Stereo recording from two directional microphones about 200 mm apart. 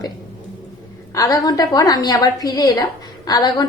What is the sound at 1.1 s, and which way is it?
A woman's voice, 20° left (ahead or behind).